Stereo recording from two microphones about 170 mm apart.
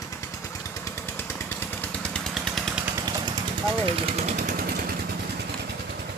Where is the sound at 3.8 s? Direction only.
35° right (ahead or behind).